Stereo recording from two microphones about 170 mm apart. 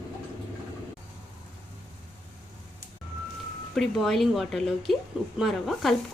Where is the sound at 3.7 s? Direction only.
Centre (ahead or behind).